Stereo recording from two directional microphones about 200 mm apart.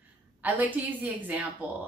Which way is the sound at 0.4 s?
10° right (ahead or behind).